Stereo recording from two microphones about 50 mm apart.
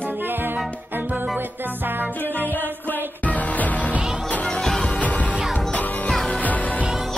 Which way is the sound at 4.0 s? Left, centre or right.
Centre.